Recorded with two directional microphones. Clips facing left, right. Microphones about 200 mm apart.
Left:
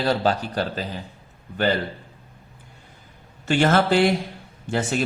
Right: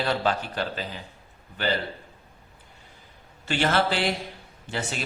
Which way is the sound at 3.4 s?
45° left (ahead or behind).